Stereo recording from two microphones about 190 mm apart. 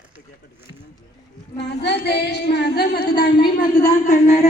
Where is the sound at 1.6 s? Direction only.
60° left (ahead or behind).